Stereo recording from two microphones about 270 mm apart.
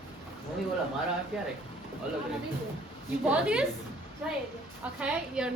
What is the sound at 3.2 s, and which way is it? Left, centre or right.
Speech, centre.